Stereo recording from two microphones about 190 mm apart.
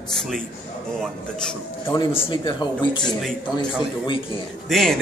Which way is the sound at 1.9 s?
20° left (ahead or behind).